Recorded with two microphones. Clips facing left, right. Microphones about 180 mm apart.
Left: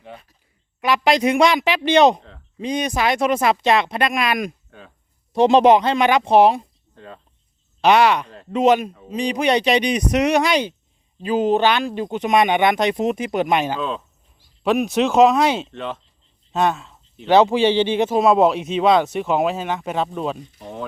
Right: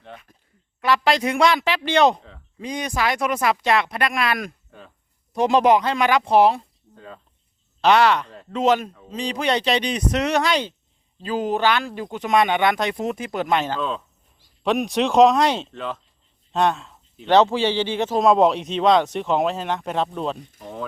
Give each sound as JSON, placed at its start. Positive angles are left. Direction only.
{"t": 0.8, "sound": "speech", "side_deg": 15}
{"t": 6.9, "sound": "cricket", "side_deg": 0}
{"t": 7.8, "sound": "speech", "side_deg": 15}
{"t": 18.1, "sound": "speech", "side_deg": 5}